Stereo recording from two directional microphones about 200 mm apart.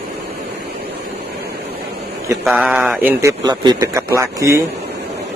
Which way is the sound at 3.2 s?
20° right (ahead or behind).